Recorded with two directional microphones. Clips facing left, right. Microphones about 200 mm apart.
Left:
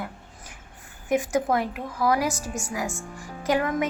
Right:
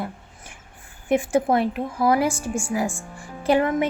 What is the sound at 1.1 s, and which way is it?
A woman's voice, 30° right (ahead or behind).